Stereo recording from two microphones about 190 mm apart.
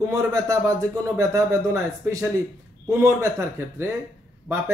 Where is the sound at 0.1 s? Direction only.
15° right (ahead or behind).